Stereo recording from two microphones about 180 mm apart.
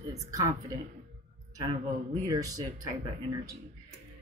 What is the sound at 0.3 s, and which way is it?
Speech, 20° right (ahead or behind).